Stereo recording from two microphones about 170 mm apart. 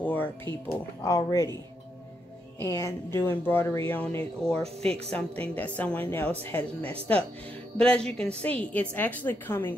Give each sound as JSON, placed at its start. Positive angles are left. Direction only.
{"t": 0.0, "sound": "music", "side_deg": 10}
{"t": 1.0, "sound": "speech", "side_deg": 20}
{"t": 2.6, "sound": "speech", "side_deg": 15}